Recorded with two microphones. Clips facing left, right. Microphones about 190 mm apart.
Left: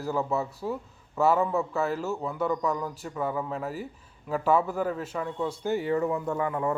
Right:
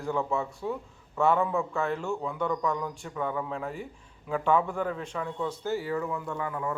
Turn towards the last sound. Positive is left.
turn(degrees=35)  # may be behind; listen again after turning